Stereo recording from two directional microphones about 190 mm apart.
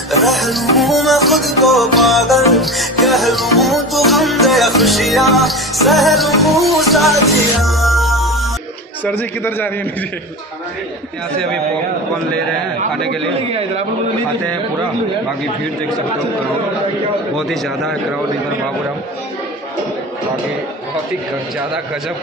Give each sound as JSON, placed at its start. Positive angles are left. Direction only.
{"t": 0.2, "sound": "music", "side_deg": 0}
{"t": 9.0, "sound": "speech", "side_deg": 10}
{"t": 13.5, "sound": "a man's voice", "side_deg": -30}
{"t": 17.4, "sound": "music", "side_deg": 0}